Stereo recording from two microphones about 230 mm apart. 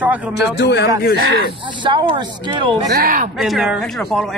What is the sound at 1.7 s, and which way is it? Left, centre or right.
Speech, right.